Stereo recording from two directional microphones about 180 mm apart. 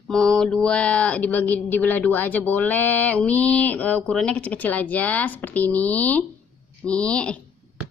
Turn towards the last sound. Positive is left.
turn(degrees=5)  # may be behind; listen again after turning